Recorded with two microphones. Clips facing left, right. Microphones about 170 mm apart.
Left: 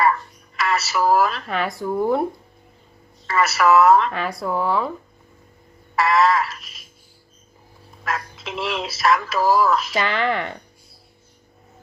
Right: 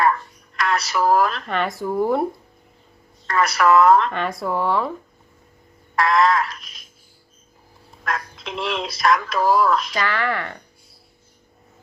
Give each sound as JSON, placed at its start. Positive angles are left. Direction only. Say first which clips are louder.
{"t": 0.0, "sound": "a woman's voice", "louder": "even", "side_deg": 5}
{"t": 3.2, "sound": "speech", "louder": "even", "side_deg": 5}
{"t": 6.0, "sound": "a sound", "louder": "even", "side_deg": 5}
{"t": 8.0, "sound": "speech", "louder": "even", "side_deg": 5}
{"t": 10.0, "sound": "speech", "louder": "left 2 dB", "side_deg": 20}